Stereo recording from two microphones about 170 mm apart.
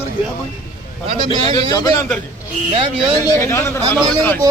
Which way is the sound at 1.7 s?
20° left (ahead or behind).